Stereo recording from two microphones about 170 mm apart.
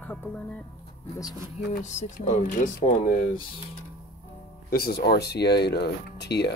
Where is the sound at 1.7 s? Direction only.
45° left (ahead or behind).